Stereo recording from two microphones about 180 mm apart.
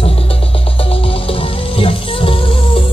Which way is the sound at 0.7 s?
30° left (ahead or behind).